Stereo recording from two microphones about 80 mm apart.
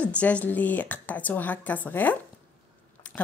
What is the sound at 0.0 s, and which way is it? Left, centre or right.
A woman's voice, centre.